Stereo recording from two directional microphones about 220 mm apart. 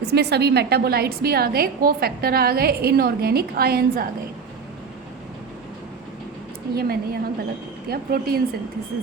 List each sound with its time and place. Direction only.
0.0 s a woman's voice: 50° right (ahead or behind)
6.7 s a woman's voice: 45° right (ahead or behind)